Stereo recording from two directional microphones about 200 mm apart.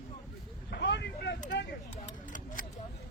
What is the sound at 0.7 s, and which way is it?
Vehicle, 60° left (ahead or behind).